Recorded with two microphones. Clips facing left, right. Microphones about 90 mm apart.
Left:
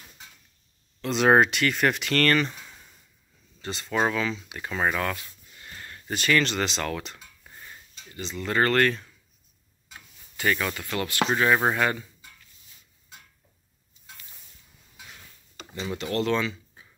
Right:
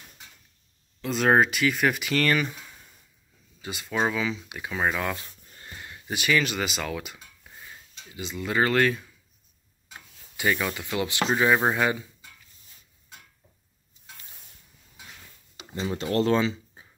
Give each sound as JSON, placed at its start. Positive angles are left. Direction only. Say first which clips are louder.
{"t": 1.0, "sound": "speech", "louder": "left 2 dB", "side_deg": 0}
{"t": 5.1, "sound": "a sound", "louder": "right 1 dB", "side_deg": -35}
{"t": 5.8, "sound": "speech", "louder": "left 1 dB", "side_deg": -10}
{"t": 9.9, "sound": "rub", "louder": "even", "side_deg": -10}
{"t": 11.3, "sound": "speech", "louder": "right 1 dB", "side_deg": -5}
{"t": 15.8, "sound": "speech", "louder": "right 3 dB", "side_deg": -30}